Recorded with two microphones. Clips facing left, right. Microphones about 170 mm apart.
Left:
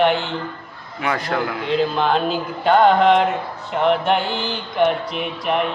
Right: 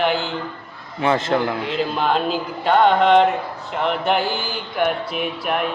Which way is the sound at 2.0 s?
Centre (ahead or behind).